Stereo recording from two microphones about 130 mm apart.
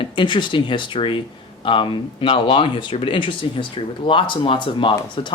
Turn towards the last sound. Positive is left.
turn(degrees=40)  # may be behind; listen again after turning